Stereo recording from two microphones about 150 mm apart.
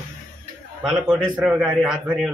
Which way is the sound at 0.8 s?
5° right (ahead or behind).